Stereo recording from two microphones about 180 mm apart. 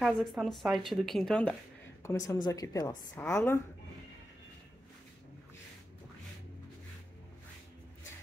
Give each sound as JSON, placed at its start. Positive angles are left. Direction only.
{"t": 0.0, "sound": "a woman's voice", "side_deg": 0}
{"t": 2.0, "sound": "a woman's voice", "side_deg": 20}
{"t": 3.3, "sound": "a woman's voice", "side_deg": 10}